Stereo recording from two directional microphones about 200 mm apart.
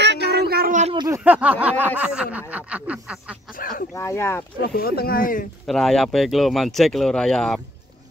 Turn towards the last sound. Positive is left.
turn(degrees=5)  # may be behind; listen again after turning